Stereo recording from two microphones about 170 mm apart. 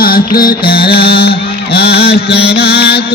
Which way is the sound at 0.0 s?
60° left (ahead or behind).